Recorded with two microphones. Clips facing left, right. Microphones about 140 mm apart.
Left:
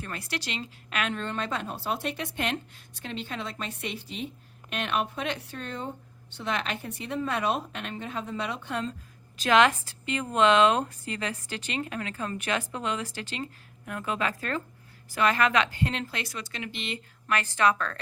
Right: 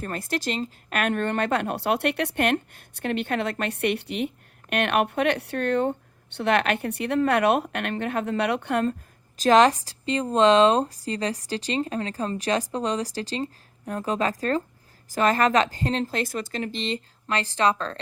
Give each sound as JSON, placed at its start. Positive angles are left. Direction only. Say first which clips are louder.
{"t": 0.0, "sound": "a woman's voice", "louder": "right 7 dB", "side_deg": -45}
{"t": 9.4, "sound": "speech", "louder": "right 5 dB", "side_deg": -40}